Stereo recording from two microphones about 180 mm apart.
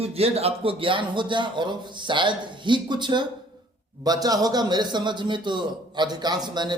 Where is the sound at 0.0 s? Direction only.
35° right (ahead or behind).